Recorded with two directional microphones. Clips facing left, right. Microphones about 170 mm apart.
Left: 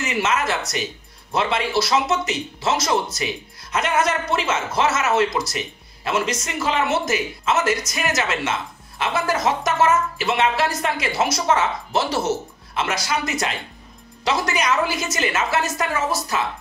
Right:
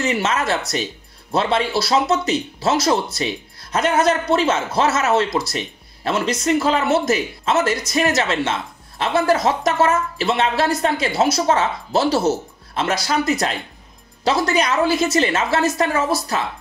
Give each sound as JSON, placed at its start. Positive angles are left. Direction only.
{"t": 0.0, "sound": "speech", "side_deg": -35}